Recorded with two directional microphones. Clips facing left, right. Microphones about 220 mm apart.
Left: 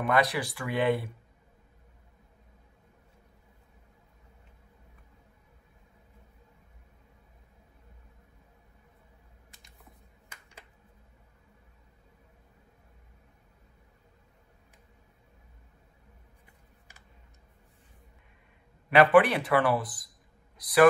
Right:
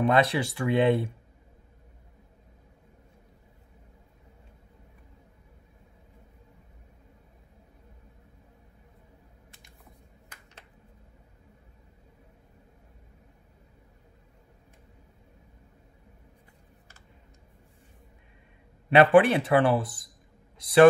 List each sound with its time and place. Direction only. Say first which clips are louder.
0.0 s speech: right 4 dB; 25° right (ahead or behind)
18.9 s a man's voice: right 2 dB; 25° right (ahead or behind)